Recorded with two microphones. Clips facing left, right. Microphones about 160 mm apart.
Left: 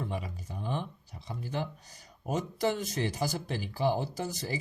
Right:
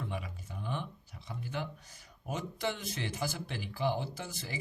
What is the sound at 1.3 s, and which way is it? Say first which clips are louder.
Speech: left 4 dB; 35° left (ahead or behind).